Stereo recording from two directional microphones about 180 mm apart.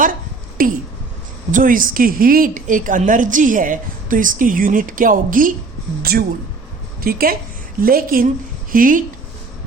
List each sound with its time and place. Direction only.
0.6 s a woman's voice: 50° right (ahead or behind)